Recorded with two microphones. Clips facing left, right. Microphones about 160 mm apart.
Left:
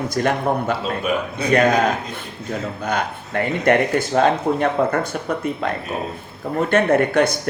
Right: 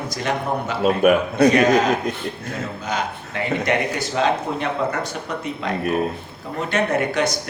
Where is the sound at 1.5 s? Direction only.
55° left (ahead or behind).